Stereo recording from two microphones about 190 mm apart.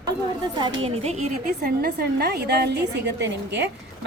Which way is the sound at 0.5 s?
25° right (ahead or behind).